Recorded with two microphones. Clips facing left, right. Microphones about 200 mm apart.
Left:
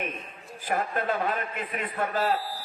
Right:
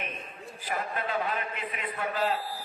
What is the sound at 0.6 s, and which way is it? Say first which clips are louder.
A man's voice: left 5 dB; 50° left (ahead or behind).